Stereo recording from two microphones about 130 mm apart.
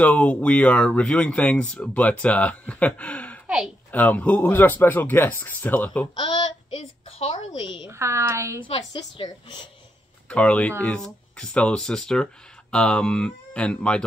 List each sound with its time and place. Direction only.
0.0 s speech: 10° left (ahead or behind)
3.4 s a sound: 5° right (ahead or behind)
3.9 s speech: 10° left (ahead or behind)
6.1 s a sound: 40° left (ahead or behind)
7.9 s a woman's voice: 20° right (ahead or behind)
8.6 s a woman's voice: 40° left (ahead or behind)
10.2 s speech: 10° left (ahead or behind)